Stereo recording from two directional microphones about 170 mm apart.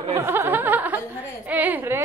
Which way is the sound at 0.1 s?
15° right (ahead or behind).